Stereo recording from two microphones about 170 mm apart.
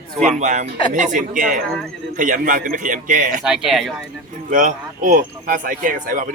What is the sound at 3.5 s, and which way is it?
Speech, centre (ahead or behind).